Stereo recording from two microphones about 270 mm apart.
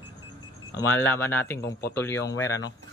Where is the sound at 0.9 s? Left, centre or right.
Centre.